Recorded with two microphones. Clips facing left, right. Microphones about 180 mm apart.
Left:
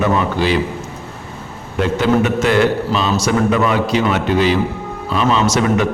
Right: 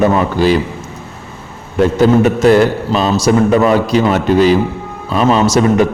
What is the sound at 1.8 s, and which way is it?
A man's voice, 40° right (ahead or behind).